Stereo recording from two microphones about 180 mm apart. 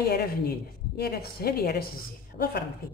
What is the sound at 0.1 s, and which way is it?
Speech, 55° left (ahead or behind).